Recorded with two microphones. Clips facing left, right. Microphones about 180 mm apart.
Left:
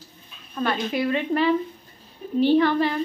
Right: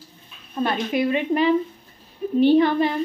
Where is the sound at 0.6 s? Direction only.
20° right (ahead or behind).